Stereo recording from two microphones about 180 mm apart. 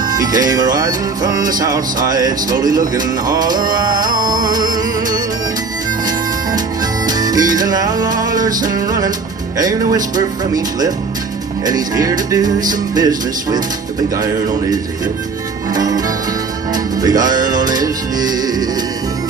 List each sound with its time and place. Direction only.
0.0 s music: 20° right (ahead or behind)
15.7 s music: 20° right (ahead or behind)